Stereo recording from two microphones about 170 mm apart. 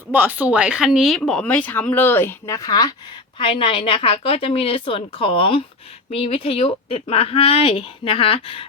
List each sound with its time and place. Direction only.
0.1 s speech: 10° right (ahead or behind); by 8.6 s 30° left (ahead or behind)